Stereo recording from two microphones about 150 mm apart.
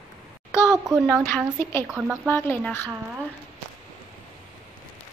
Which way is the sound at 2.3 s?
15° left (ahead or behind).